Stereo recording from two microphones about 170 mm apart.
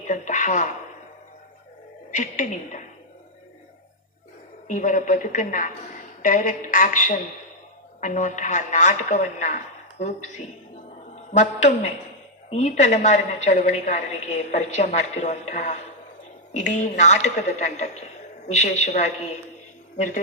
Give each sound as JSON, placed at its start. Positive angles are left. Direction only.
{"t": 0.0, "sound": "a woman's voice", "side_deg": 50}
{"t": 2.0, "sound": "a woman's voice", "side_deg": 50}
{"t": 4.7, "sound": "a woman's voice", "side_deg": 50}